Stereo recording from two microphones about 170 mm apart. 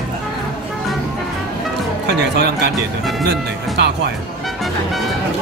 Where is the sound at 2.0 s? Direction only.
80° right.